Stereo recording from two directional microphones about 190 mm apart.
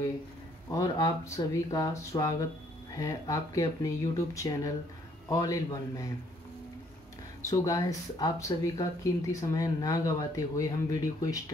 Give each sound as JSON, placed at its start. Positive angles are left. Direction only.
{"t": 0.7, "sound": "speech", "side_deg": 20}
{"t": 7.4, "sound": "speech", "side_deg": 20}